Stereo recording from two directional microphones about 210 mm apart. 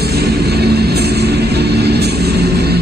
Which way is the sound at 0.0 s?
50° right (ahead or behind).